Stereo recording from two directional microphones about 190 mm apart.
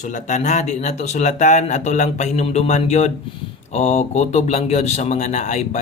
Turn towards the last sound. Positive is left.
turn(degrees=40)  # may be behind; listen again after turning